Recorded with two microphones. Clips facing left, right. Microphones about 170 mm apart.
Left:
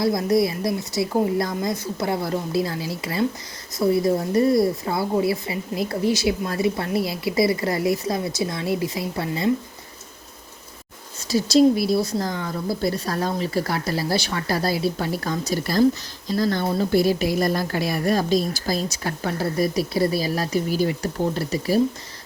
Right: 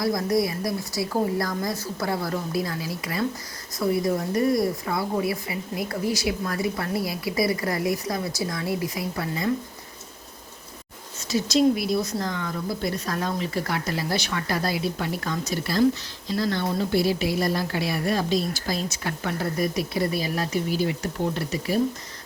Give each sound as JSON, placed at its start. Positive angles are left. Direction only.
{"t": 0.0, "sound": "a woman's voice", "side_deg": 25}
{"t": 11.3, "sound": "a woman's voice", "side_deg": 35}